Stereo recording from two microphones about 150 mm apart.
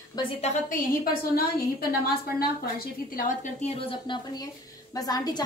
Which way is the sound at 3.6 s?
40° left (ahead or behind).